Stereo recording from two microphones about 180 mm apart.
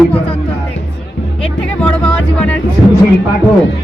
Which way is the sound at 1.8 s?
5° left (ahead or behind).